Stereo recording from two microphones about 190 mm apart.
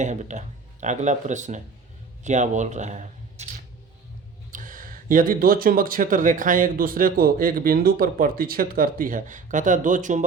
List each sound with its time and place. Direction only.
0.0 s speech: 40° right (ahead or behind)
4.5 s speech: 45° right (ahead or behind)